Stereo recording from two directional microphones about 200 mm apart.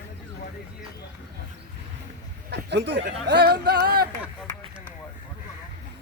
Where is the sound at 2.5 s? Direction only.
60° right (ahead or behind).